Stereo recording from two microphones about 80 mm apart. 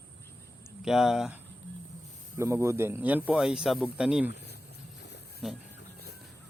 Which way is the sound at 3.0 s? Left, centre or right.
Right.